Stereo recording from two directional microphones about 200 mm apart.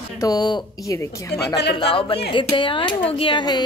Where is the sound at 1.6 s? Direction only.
60° left (ahead or behind).